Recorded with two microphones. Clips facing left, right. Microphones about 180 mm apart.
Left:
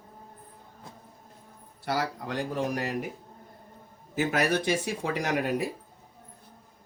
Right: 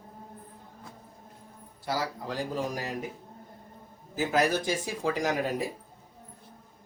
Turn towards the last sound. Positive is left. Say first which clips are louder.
# left 1 dB
turn(degrees=65)  # may be behind; listen again after turning